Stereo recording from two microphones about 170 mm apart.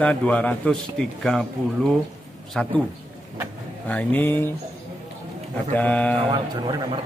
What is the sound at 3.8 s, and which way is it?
Speech, 10° left (ahead or behind).